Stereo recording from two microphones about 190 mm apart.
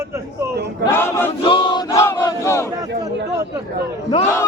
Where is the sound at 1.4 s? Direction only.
25° left (ahead or behind).